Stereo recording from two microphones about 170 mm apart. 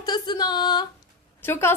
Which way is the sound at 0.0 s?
25° left (ahead or behind).